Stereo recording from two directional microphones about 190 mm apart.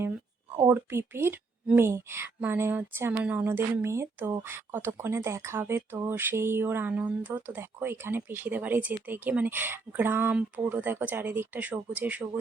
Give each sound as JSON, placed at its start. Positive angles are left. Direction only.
{"t": 0.5, "sound": "a woman's voice", "side_deg": -15}